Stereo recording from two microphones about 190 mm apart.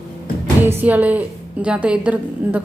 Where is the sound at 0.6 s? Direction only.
10° right (ahead or behind).